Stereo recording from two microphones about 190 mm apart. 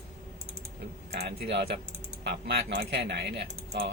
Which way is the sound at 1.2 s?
55° right (ahead or behind).